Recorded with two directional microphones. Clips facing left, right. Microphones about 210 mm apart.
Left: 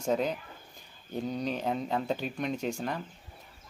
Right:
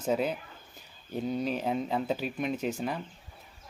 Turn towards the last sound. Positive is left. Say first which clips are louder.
# right 1 dB
turn(degrees=-5)  # may be behind; listen again after turning